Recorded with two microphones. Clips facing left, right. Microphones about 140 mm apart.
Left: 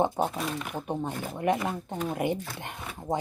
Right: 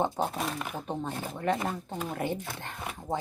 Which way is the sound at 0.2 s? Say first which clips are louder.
Left 2 dB; 10° left (ahead or behind).